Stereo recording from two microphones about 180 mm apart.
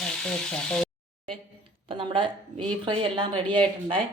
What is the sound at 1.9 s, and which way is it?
A woman's voice, 30° right (ahead or behind).